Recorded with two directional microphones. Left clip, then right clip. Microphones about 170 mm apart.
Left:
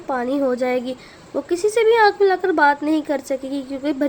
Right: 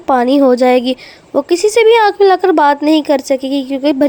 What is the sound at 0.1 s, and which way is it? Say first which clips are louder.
A woman's voice: right 11 dB; 40° right (ahead or behind).